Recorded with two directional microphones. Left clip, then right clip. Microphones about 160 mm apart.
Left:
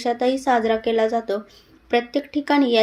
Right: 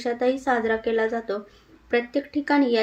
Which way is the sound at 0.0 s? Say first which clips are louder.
Left 3 dB; 40° left (ahead or behind).